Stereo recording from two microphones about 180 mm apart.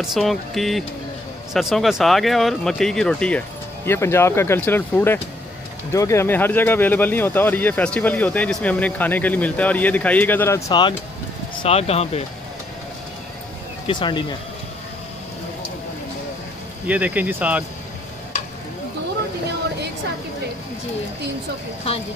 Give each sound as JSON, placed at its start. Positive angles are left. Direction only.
{"t": 0.0, "sound": "speech", "side_deg": 0}
{"t": 10.7, "sound": "speech", "side_deg": 25}
{"t": 13.8, "sound": "speech", "side_deg": 25}
{"t": 16.8, "sound": "speech", "side_deg": -10}